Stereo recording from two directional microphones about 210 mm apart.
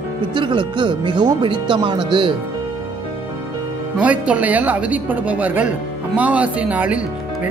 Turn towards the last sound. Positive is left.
turn(degrees=-5)  # may be behind; listen again after turning